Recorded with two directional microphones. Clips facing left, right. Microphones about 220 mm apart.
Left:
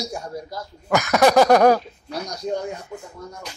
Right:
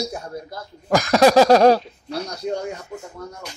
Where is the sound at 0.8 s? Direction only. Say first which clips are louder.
Right 2 dB; 30° right (ahead or behind).